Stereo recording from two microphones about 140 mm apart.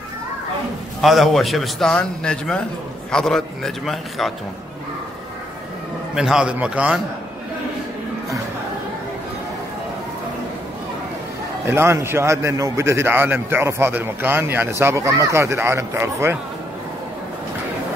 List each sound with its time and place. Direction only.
1.0 s a man's voice: centre (ahead or behind)
6.1 s a man's voice: 5° right (ahead or behind)
11.6 s a man's voice: 20° right (ahead or behind)